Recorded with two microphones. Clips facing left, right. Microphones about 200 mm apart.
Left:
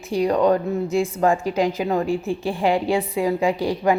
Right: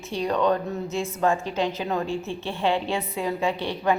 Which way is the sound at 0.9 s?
15° left (ahead or behind).